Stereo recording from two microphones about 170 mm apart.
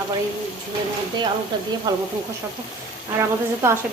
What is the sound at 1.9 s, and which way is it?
Speech, 25° right (ahead or behind).